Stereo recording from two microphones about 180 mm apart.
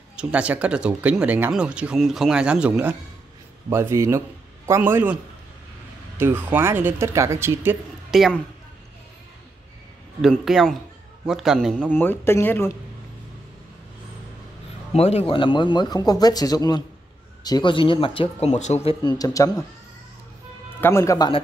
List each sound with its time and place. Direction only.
0.1 s speech: 5° right (ahead or behind)
8.1 s speech: centre (ahead or behind)
10.2 s a man's voice: centre (ahead or behind)
14.9 s speech: 35° left (ahead or behind)
18.9 s speech: 25° left (ahead or behind)
20.8 s a man's voice: 15° left (ahead or behind)